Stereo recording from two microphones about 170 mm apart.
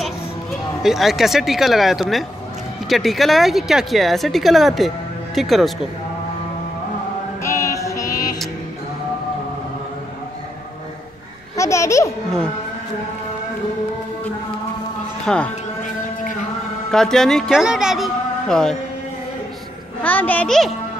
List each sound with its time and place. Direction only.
0.8 s speech: centre (ahead or behind)
7.4 s music: 15° left (ahead or behind)
11.5 s babbling: 20° left (ahead or behind)
15.2 s speech: 5° left (ahead or behind)
16.9 s speech: 5° left (ahead or behind)
20.0 s a child's voice: 10° left (ahead or behind)